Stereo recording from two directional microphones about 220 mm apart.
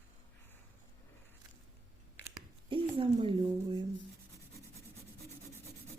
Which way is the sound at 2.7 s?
25° right (ahead or behind).